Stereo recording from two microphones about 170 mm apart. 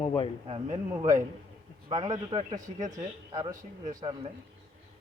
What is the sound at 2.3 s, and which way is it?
Speech, 20° right (ahead or behind).